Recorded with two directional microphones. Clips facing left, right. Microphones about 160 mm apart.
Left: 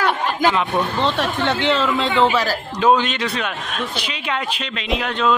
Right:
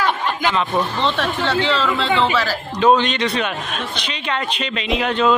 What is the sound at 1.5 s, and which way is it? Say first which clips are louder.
Speech: left 1 dB; 20° left (ahead or behind).